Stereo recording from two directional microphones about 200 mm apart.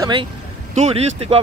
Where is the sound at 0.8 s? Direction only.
30° right (ahead or behind).